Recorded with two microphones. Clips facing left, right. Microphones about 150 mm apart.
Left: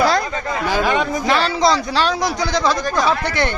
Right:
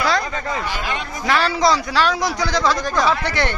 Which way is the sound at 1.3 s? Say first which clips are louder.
Even; 25° left (ahead or behind).